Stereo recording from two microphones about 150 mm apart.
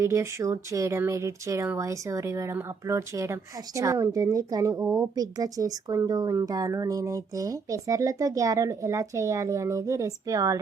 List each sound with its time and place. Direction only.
0.0 s speech: 20° right (ahead or behind)